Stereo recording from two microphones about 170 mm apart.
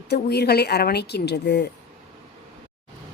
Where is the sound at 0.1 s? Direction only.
75° left (ahead or behind).